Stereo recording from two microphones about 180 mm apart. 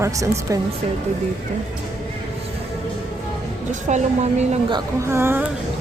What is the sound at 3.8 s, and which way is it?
Speech, 40° right (ahead or behind).